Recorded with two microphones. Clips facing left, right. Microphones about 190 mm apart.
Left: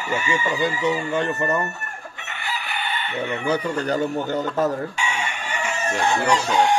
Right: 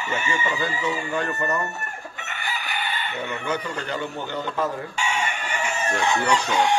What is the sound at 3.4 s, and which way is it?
Speech, 40° left (ahead or behind).